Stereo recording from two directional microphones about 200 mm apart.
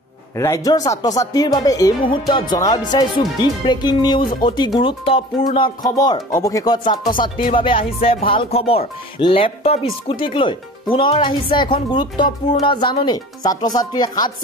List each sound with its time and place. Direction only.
0.4 s speech: 15° left (ahead or behind)